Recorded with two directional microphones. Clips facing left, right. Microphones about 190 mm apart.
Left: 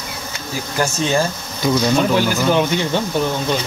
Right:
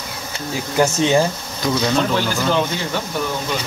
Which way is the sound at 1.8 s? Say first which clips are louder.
Left 2 dB; 10° left (ahead or behind).